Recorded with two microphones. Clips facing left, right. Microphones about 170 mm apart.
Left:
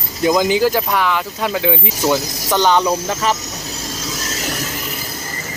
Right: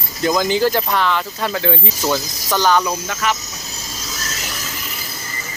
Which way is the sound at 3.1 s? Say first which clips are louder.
Left 3 dB; 35° left (ahead or behind).